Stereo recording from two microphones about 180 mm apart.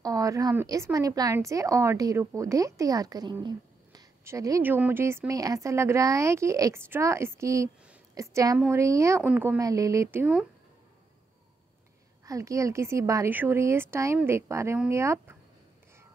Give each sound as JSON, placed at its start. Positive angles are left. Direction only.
{"t": 0.0, "sound": "speech", "side_deg": -20}
{"t": 12.3, "sound": "speech", "side_deg": -15}